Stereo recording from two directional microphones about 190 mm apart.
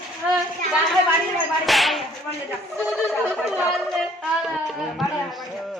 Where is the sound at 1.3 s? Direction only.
Centre (ahead or behind).